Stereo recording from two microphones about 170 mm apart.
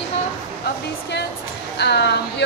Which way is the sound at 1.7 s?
80° left.